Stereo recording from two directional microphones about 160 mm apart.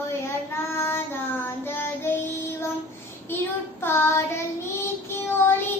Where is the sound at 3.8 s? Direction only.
15° left (ahead or behind).